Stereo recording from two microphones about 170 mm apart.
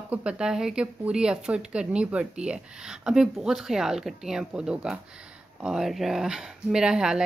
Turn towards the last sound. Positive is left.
turn(degrees=-5)  # may be behind; listen again after turning